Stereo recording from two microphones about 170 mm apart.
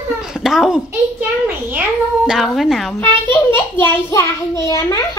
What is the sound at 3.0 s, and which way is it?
A child's voice, 15° left (ahead or behind).